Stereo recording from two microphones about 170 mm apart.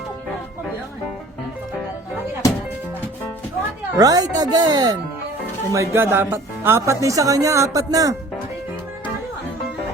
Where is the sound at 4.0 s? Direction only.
20° right (ahead or behind).